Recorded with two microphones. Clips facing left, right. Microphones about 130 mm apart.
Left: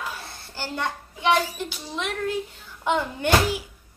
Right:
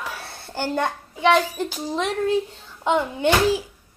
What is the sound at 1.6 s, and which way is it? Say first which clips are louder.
A child's voice: right 6 dB; 40° right (ahead or behind).